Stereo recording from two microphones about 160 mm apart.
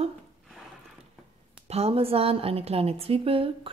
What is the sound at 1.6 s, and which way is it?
A woman's voice, 40° right (ahead or behind).